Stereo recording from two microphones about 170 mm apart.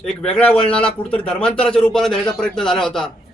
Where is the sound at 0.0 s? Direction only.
5° left (ahead or behind).